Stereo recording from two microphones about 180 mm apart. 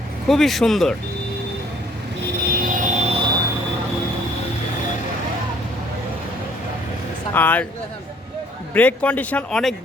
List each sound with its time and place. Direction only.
0.3 s speech: centre (ahead or behind)
2.5 s a sound: 50° right (ahead or behind)
7.3 s speech: 10° left (ahead or behind)
8.7 s speech: 10° left (ahead or behind)